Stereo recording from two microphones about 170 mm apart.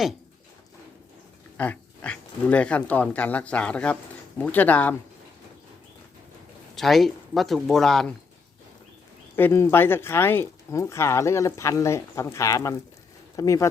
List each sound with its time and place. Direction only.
1.5 s speech: 10° left (ahead or behind)
6.7 s speech: centre (ahead or behind)
9.3 s speech: 15° left (ahead or behind)